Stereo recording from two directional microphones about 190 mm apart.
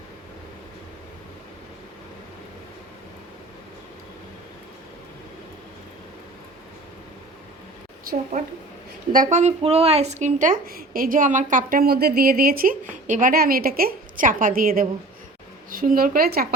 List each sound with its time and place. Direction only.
9.1 s a woman's voice: 40° right (ahead or behind)